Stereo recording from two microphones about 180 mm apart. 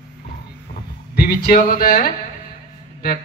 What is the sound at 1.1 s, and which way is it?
Speech, 55° left (ahead or behind).